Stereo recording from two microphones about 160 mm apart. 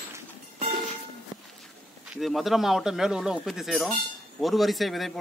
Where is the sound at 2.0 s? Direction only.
Centre (ahead or behind).